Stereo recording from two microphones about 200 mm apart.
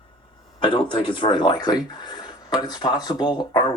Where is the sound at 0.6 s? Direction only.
25° left (ahead or behind).